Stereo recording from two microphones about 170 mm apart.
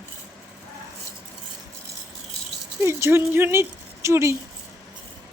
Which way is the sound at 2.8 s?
15° right (ahead or behind).